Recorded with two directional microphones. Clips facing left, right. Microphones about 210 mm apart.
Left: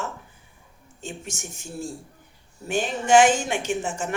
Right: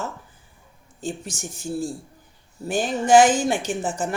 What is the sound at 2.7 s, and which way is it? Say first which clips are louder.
Speech: right 2 dB; 35° right (ahead or behind).